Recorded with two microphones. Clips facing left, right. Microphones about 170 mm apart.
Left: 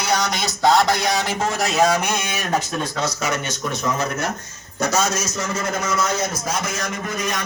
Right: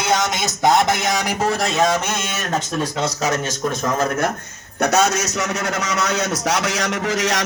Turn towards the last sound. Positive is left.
turn(degrees=-80)